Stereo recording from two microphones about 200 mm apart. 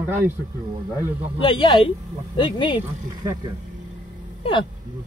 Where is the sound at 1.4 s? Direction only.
25° left (ahead or behind).